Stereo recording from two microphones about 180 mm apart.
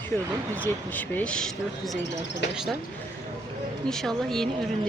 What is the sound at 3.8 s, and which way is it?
Speech, centre (ahead or behind).